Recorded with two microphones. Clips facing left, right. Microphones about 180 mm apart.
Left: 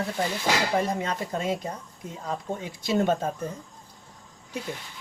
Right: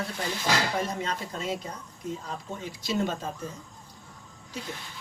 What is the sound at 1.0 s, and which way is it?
Speech, 50° left (ahead or behind).